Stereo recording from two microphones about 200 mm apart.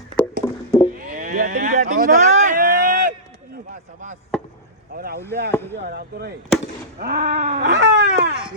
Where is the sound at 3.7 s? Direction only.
40° right (ahead or behind).